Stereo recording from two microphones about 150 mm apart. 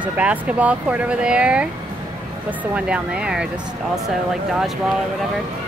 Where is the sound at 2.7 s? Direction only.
5° right (ahead or behind).